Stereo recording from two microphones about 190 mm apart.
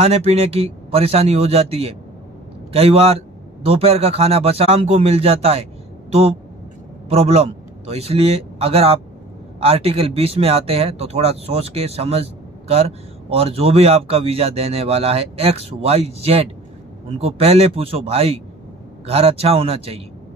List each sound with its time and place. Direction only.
0.0 s speech: 35° right (ahead or behind)
7.1 s a man's voice: 30° right (ahead or behind)